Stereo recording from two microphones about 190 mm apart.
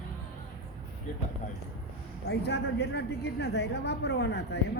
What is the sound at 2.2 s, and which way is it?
A woman's voice, 65° left (ahead or behind).